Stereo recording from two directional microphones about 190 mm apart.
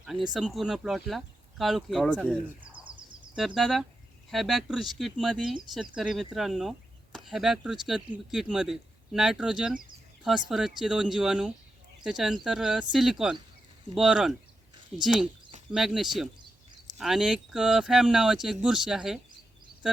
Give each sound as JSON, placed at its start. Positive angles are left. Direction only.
{"t": 0.0, "sound": "speech", "side_deg": 0}
{"t": 2.7, "sound": "a sound", "side_deg": -25}
{"t": 3.3, "sound": "speech", "side_deg": 0}